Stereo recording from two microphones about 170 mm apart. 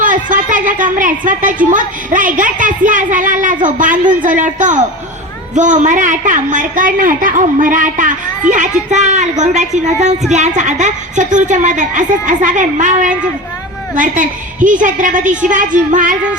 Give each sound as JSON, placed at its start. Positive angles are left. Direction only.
{"t": 0.0, "sound": "a woman's voice", "side_deg": -50}